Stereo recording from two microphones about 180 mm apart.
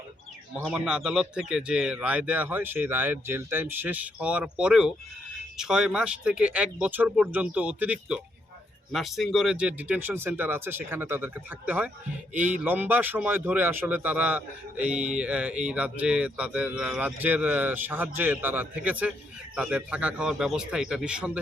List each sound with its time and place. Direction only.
0.6 s a man's voice: 5° right (ahead or behind)